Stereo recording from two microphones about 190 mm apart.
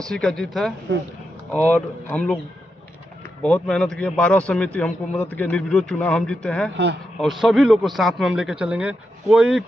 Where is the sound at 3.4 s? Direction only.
5° left (ahead or behind).